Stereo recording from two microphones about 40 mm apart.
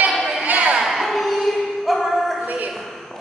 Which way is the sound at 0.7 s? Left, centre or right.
Centre.